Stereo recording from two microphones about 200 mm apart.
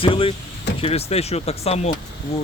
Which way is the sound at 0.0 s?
25° left (ahead or behind).